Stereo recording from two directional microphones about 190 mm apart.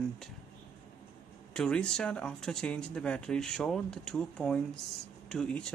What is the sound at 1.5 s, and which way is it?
Speech, 5° left (ahead or behind).